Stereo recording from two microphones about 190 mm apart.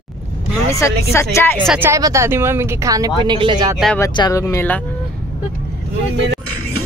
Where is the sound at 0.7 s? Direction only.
15° left (ahead or behind).